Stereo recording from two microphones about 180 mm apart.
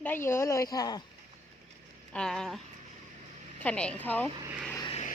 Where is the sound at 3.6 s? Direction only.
5° left (ahead or behind).